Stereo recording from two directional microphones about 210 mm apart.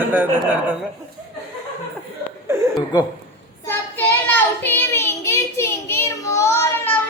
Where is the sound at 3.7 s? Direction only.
10° left (ahead or behind).